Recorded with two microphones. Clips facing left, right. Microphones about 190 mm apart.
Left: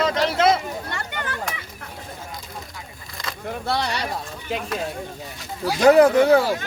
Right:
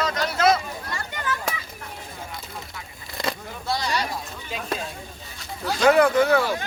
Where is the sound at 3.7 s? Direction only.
65° left (ahead or behind).